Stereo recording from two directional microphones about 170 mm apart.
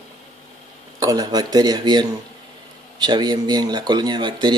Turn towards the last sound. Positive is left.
turn(degrees=-25)  # may be behind; listen again after turning